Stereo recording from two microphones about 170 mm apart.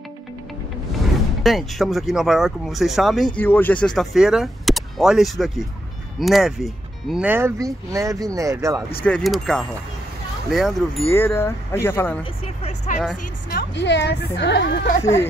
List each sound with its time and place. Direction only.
1.4 s speech: centre (ahead or behind)
3.3 s speech: 10° left (ahead or behind); by 8.8 s 20° right (ahead or behind)
8.9 s speech: 5° left (ahead or behind)
11.1 s speech: 15° left (ahead or behind)
12.2 s vehicle: 40° left (ahead or behind)
13.5 s a woman's voice: 75° left (ahead or behind); by 14.9 s 90° left